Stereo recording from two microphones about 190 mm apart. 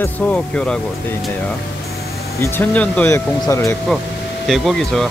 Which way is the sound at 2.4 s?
10° left (ahead or behind).